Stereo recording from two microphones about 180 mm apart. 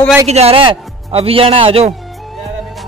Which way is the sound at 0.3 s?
35° right (ahead or behind).